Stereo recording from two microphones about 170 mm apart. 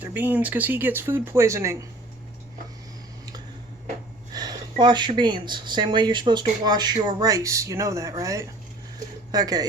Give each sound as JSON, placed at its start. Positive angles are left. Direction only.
{"t": 0.0, "sound": "speech", "side_deg": -10}
{"t": 4.3, "sound": "speech", "side_deg": -25}